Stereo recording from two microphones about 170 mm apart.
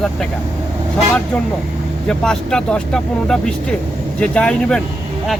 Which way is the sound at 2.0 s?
5° left (ahead or behind).